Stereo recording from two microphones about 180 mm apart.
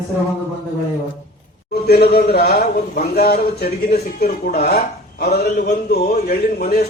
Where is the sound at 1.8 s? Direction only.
60° left (ahead or behind).